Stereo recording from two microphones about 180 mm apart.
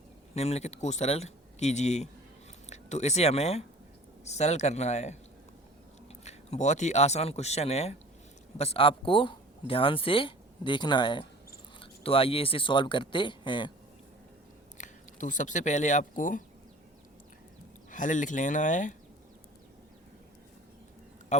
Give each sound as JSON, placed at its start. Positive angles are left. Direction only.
{"t": 0.3, "sound": "speech", "side_deg": 35}
{"t": 6.2, "sound": "speech", "side_deg": 40}
{"t": 14.8, "sound": "speech", "side_deg": 45}
{"t": 17.9, "sound": "speech", "side_deg": 45}